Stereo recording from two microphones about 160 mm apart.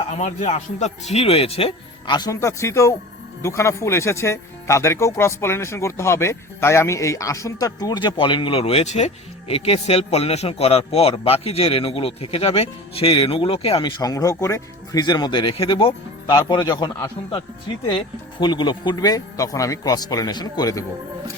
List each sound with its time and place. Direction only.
0.0 s speech: 45° left (ahead or behind)
14.0 s speech: 20° left (ahead or behind)